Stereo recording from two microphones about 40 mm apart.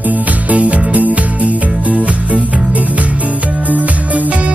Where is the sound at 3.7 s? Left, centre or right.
Right.